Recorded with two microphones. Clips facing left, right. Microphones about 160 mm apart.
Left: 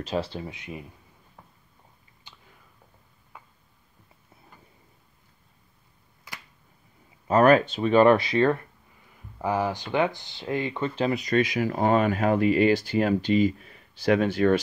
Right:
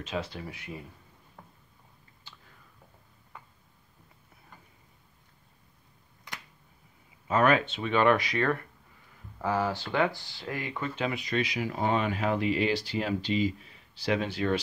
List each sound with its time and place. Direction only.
0.0 s speech: 35° left (ahead or behind); by 0.8 s 20° left (ahead or behind)
2.3 s a sound: 15° left (ahead or behind)
7.2 s speech: 40° left (ahead or behind)
9.4 s speech: 15° left (ahead or behind); by 14.6 s 50° left (ahead or behind)